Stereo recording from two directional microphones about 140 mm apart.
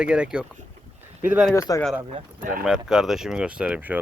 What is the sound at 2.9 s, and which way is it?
Speech, 5° right (ahead or behind).